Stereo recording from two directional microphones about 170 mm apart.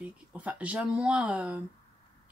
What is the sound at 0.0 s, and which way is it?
Speech, 10° right (ahead or behind).